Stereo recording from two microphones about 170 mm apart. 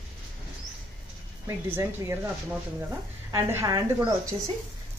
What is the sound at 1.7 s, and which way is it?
Speech, 15° right (ahead or behind).